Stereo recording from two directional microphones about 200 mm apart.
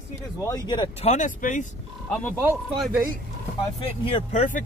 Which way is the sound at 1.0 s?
40° left (ahead or behind).